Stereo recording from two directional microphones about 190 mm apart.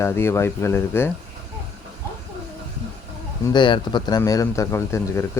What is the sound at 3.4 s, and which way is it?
Speech, 25° left (ahead or behind).